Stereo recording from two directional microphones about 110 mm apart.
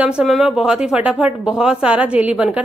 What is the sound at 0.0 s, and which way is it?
Speech, 5° right (ahead or behind).